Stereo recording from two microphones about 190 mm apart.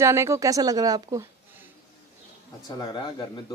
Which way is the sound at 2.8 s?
25° left (ahead or behind).